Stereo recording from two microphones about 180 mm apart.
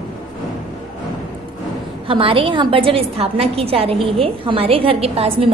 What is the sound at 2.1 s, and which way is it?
A woman's voice, 30° right (ahead or behind).